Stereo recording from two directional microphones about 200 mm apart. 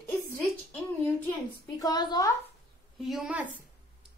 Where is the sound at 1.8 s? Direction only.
20° left (ahead or behind).